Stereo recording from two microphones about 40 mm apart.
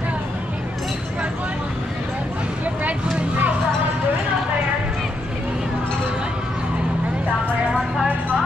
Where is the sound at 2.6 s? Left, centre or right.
Right.